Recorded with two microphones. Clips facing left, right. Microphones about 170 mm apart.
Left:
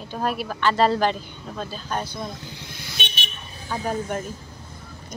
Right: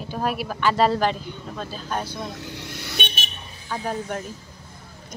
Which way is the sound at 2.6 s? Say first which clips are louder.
Right 4 dB; 70° right (ahead or behind).